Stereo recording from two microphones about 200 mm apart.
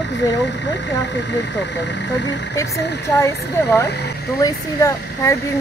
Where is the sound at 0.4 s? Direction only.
60° left (ahead or behind).